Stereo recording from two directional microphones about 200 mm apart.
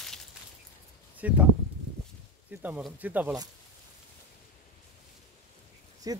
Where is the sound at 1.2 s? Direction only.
10° right (ahead or behind).